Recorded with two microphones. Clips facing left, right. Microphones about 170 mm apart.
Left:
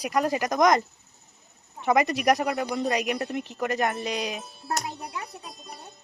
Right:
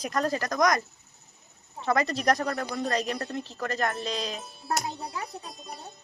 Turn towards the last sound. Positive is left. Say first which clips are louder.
# right 1 dB
turn(degrees=0)  # may be behind; listen again after turning